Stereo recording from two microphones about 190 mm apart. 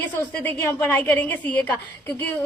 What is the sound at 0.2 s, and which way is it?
A woman's voice, 10° left (ahead or behind).